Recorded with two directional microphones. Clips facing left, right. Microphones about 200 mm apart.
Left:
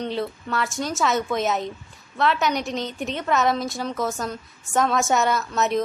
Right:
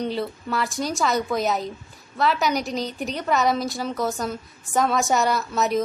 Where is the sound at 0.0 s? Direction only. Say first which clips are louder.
Right 1 dB; centre (ahead or behind).